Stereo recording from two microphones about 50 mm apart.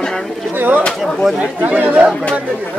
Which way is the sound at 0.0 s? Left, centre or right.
Centre.